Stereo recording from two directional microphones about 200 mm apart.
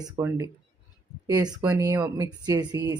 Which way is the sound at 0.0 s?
15° right (ahead or behind).